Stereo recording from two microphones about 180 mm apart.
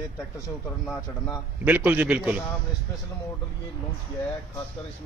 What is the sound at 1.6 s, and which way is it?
Speech, 10° right (ahead or behind).